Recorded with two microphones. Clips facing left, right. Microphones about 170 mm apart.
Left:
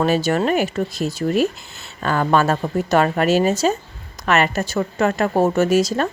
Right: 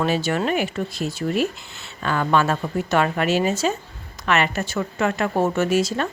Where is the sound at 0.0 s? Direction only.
40° left (ahead or behind).